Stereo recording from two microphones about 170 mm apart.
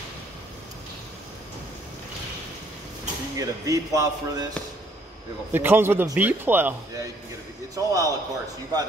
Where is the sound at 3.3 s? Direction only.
20° right (ahead or behind).